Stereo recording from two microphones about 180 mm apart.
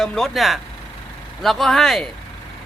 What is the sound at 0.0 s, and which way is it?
Speech, 5° left (ahead or behind).